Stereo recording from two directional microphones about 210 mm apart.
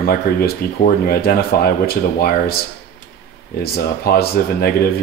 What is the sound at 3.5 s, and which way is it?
Speech, 45° left (ahead or behind).